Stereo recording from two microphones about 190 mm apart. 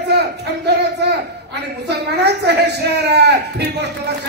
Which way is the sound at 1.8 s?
60° right (ahead or behind).